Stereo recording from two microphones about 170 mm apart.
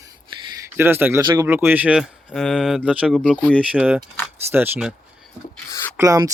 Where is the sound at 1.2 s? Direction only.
25° right (ahead or behind).